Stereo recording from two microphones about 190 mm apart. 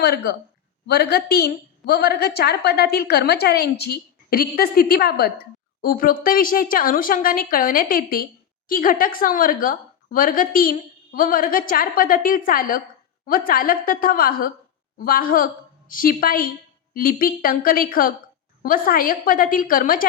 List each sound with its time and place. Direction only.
0.0 s a woman's voice: 55° left (ahead or behind)